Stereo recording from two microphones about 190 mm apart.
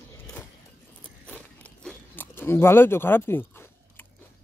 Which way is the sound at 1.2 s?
5° left (ahead or behind).